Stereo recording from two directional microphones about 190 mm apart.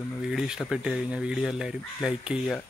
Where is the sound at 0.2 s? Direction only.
5° right (ahead or behind).